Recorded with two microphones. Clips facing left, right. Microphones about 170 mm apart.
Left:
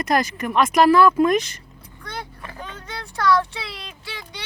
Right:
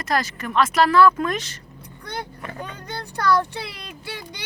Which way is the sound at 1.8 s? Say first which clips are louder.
Right 2 dB; 60° right (ahead or behind).